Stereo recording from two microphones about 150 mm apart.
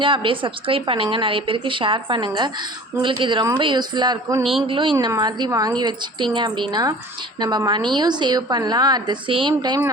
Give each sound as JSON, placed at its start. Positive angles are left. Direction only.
{"t": 0.0, "sound": "a woman's voice", "side_deg": -35}